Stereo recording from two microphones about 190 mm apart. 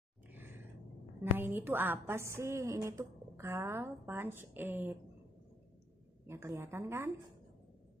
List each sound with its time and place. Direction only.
0.3 s sigh: 10° right (ahead or behind)
1.2 s a woman's voice: 10° right (ahead or behind)
6.2 s a woman's voice: 15° right (ahead or behind)